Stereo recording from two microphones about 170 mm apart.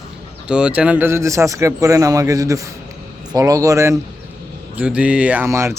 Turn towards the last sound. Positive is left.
turn(degrees=-15)  # may be behind; listen again after turning